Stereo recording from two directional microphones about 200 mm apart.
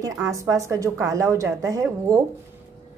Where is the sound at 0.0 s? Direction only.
15° right (ahead or behind).